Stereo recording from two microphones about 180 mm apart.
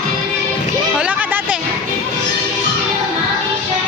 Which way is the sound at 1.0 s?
5° right (ahead or behind).